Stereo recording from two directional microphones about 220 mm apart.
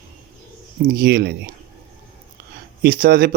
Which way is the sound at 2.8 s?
40° right (ahead or behind).